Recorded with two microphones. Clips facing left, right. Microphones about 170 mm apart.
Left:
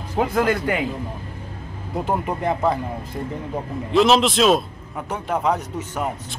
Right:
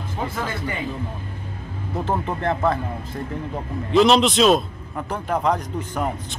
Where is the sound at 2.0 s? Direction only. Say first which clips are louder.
Left 1 dB; 10° left (ahead or behind).